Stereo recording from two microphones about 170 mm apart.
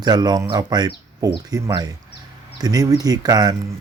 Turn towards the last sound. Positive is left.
turn(degrees=-25)  # may be behind; listen again after turning